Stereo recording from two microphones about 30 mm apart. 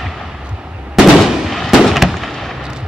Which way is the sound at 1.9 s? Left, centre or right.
Centre.